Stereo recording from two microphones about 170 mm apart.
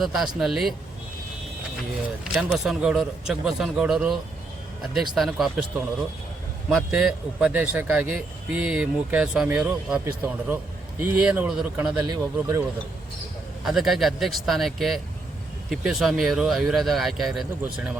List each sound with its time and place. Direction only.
0.0 s a man's voice: centre (ahead or behind)
2.5 s a man's voice: 5° right (ahead or behind)
6.7 s a man's voice: 5° right (ahead or behind)
12.0 s speech: 25° right (ahead or behind)
13.7 s a man's voice: centre (ahead or behind)